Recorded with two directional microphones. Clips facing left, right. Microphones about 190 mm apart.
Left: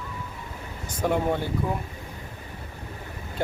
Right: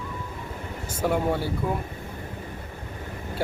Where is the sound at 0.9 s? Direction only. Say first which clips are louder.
Even; 5° right (ahead or behind).